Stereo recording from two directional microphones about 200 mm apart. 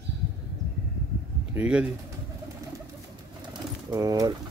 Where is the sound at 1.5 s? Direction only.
5° right (ahead or behind).